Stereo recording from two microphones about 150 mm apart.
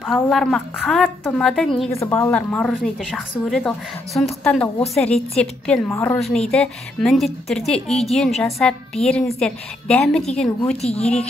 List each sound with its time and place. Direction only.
0.0 s a woman's voice: centre (ahead or behind)
1.9 s a woman's voice: 20° left (ahead or behind)
5.9 s a woman's voice: 15° left (ahead or behind)
6.1 s a woman's voice: centre (ahead or behind)